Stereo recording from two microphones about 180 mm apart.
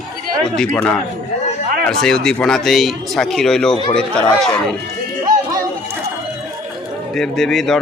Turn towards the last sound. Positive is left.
turn(degrees=0)  # may be behind; listen again after turning